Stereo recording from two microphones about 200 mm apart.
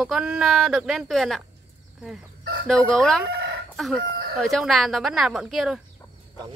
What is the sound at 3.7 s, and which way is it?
Chicken, centre (ahead or behind).